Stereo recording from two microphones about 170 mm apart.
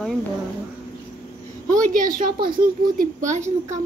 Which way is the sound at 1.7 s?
50° right (ahead or behind).